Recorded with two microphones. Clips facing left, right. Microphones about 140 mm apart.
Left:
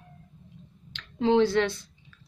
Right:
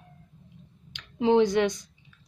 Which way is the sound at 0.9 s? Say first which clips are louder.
Right 1 dB; 15° right (ahead or behind).